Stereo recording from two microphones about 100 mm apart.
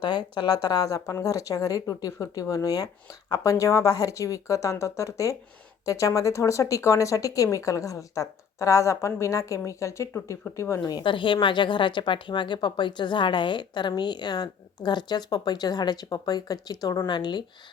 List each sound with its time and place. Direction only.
0.0 s speech: 50° left (ahead or behind); by 10.9 s 30° left (ahead or behind)
10.9 s speech: 55° left (ahead or behind)